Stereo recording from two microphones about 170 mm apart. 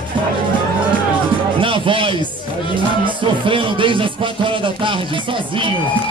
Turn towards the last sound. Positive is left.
turn(degrees=-30)  # may be behind; listen again after turning